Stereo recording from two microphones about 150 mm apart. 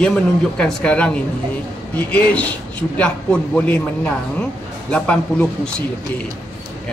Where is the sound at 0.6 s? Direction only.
5° left (ahead or behind).